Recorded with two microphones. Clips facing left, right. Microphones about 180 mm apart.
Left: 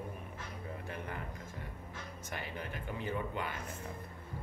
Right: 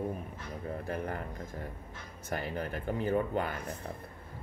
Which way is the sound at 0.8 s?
40° right (ahead or behind).